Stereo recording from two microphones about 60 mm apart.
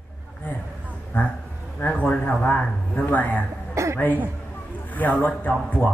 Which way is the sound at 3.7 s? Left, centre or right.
Right.